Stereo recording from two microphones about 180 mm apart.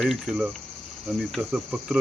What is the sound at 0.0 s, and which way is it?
Cricket, centre (ahead or behind).